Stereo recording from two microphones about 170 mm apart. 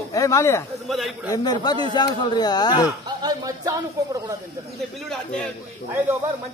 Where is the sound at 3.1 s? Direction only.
25° right (ahead or behind).